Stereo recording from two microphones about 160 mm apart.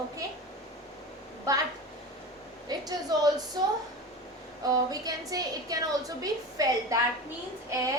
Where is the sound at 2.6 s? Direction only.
25° right (ahead or behind).